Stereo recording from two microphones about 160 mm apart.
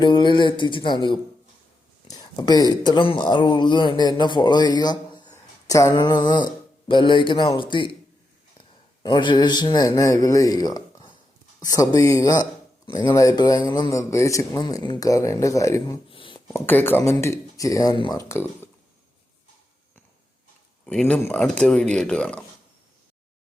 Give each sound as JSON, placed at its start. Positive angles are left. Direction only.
{"t": 0.0, "sound": "speech", "side_deg": 30}
{"t": 9.0, "sound": "speech", "side_deg": 30}
{"t": 16.0, "sound": "a sound", "side_deg": 35}
{"t": 16.5, "sound": "speech", "side_deg": 15}
{"t": 20.8, "sound": "speech", "side_deg": 5}